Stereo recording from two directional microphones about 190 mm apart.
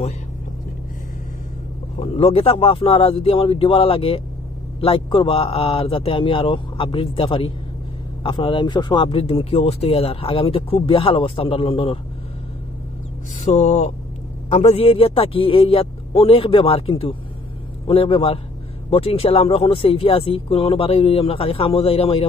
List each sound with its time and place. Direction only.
2.0 s speech: 30° left (ahead or behind)
13.4 s speech: 35° left (ahead or behind)